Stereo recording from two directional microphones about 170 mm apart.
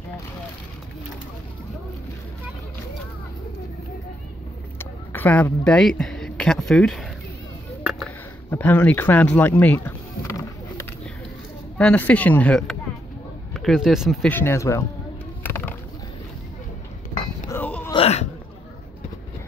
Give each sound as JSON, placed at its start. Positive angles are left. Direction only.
{"t": 4.7, "sound": "speech", "side_deg": 10}
{"t": 8.5, "sound": "a sound", "side_deg": 10}
{"t": 11.8, "sound": "speech", "side_deg": 10}
{"t": 14.3, "sound": "speech", "side_deg": 15}
{"t": 15.4, "sound": "music", "side_deg": 10}
{"t": 17.5, "sound": "music", "side_deg": 10}
{"t": 17.9, "sound": "a sound", "side_deg": 35}